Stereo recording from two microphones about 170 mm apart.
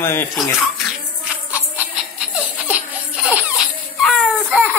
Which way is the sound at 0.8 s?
10° right (ahead or behind).